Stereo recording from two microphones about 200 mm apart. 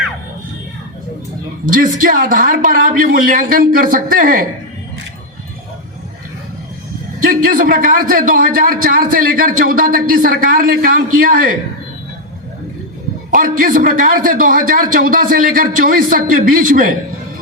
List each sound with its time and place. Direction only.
1.7 s a man's voice: 45° right (ahead or behind)
7.2 s a man's voice: 45° right (ahead or behind)
13.3 s a man's voice: 45° right (ahead or behind)